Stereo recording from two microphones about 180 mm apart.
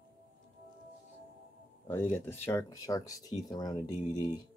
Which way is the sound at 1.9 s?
10° left (ahead or behind).